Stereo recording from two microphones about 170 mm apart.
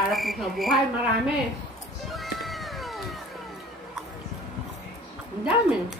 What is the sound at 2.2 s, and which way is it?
Cat, centre (ahead or behind).